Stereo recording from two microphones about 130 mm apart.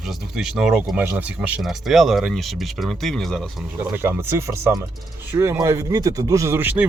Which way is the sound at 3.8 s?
15° right (ahead or behind).